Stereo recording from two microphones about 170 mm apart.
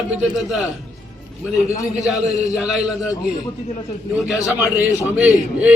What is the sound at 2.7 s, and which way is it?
Speech, centre (ahead or behind).